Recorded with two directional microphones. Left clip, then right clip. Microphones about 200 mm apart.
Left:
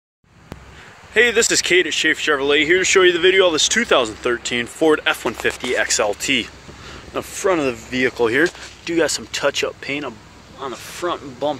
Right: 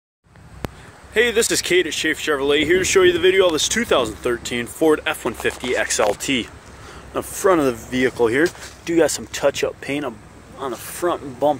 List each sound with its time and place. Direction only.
1.1 s speech: 5° right (ahead or behind)